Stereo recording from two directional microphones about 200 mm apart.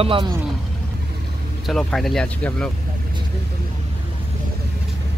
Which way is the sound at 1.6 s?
Centre (ahead or behind).